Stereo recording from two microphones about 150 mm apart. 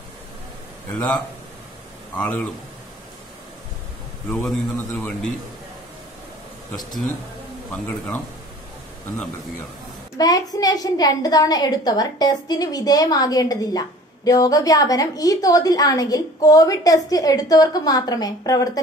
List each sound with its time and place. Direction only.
0.9 s a man's voice: 10° left (ahead or behind)
4.5 s a man's voice: 5° left (ahead or behind)
10.1 s a woman's voice: 25° left (ahead or behind)